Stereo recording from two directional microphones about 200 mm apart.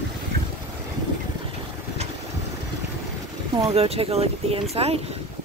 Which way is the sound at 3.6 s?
30° right (ahead or behind).